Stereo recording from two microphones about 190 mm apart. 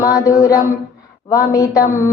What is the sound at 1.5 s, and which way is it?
Mantra, 15° left (ahead or behind).